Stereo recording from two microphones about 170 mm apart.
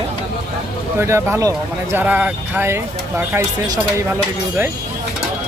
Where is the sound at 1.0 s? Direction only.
15° right (ahead or behind).